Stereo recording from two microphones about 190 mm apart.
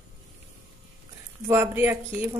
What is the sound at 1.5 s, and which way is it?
Speech, 10° right (ahead or behind).